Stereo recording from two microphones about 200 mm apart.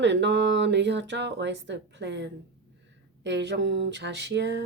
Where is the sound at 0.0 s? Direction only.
60° right (ahead or behind).